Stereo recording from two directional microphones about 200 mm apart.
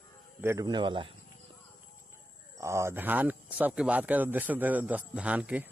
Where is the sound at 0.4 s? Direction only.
15° right (ahead or behind).